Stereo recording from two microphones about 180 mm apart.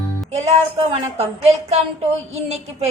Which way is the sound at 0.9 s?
35° right (ahead or behind).